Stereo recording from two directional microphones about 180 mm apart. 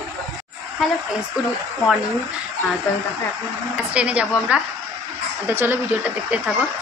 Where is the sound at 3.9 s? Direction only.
5° right (ahead or behind).